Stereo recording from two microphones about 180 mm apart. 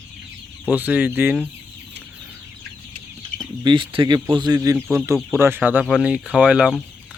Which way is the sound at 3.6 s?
25° right (ahead or behind).